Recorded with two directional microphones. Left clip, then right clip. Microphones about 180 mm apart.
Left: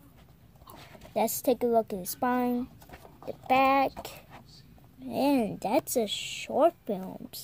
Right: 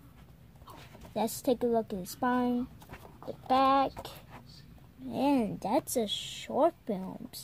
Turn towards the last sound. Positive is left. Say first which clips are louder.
# left 3 dB
turn(degrees=30)  # may be behind; listen again after turning